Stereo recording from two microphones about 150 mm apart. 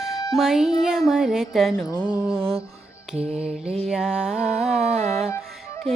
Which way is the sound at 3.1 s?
5° right (ahead or behind).